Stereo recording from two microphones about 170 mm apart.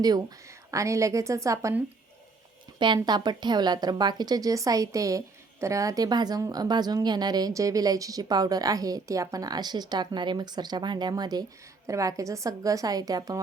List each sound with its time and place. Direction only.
0.7 s a woman's voice: 20° right (ahead or behind)